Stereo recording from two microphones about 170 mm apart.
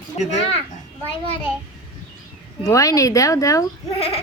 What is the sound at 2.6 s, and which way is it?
Speech, 20° left (ahead or behind).